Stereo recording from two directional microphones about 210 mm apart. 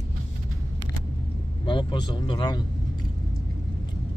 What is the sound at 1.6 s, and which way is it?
Speech, 25° left (ahead or behind).